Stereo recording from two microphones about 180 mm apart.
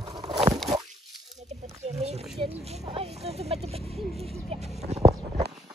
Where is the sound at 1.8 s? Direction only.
35° right (ahead or behind).